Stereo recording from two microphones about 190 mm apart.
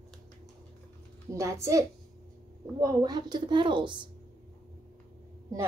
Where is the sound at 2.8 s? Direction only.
20° right (ahead or behind).